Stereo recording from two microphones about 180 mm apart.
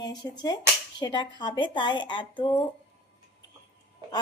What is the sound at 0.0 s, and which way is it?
Speech, 20° left (ahead or behind).